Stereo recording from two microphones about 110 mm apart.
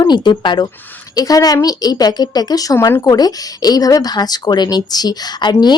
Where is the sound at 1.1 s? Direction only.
35° left (ahead or behind).